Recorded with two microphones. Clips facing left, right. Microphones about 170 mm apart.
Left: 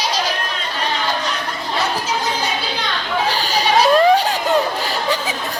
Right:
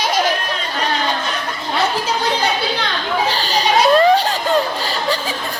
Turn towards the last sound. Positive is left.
turn(degrees=0)  # may be behind; listen again after turning